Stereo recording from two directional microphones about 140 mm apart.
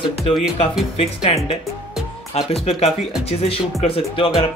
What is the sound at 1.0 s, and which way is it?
Speech, 40° left (ahead or behind).